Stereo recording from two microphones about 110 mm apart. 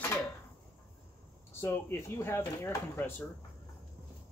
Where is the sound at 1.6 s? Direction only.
20° left (ahead or behind).